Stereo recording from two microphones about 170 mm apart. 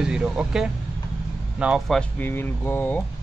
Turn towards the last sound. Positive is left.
turn(degrees=10)  # may be behind; listen again after turning